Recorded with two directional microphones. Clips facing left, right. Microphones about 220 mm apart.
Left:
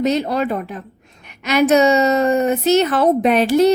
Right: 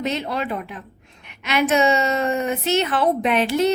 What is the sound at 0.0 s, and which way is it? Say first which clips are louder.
A woman's voice: left 7 dB; 40° left (ahead or behind).